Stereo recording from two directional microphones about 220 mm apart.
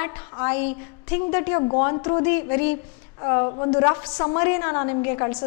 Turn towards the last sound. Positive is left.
turn(degrees=15)  # may be behind; listen again after turning